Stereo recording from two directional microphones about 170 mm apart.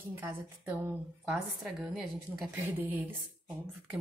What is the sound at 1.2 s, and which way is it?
A woman's voice, centre (ahead or behind).